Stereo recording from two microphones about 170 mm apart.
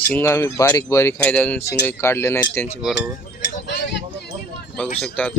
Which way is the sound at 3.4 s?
90° left.